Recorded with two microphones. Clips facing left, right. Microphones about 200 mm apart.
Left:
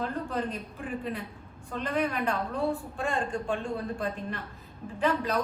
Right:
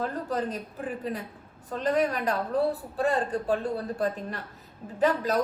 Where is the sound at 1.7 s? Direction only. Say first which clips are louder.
Right 4 dB; 40° right (ahead or behind).